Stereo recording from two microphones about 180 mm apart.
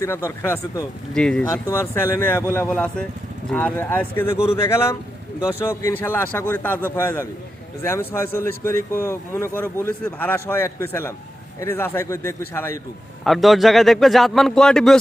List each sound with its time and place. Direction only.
0.0 s a man's voice: 15° left (ahead or behind)
1.1 s a man's voice: 5° left (ahead or behind)
13.2 s a man's voice: centre (ahead or behind)